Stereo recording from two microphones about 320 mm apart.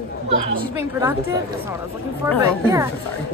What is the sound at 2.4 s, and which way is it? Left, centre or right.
Speech, centre.